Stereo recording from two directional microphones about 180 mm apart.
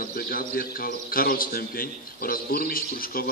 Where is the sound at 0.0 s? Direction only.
55° left (ahead or behind).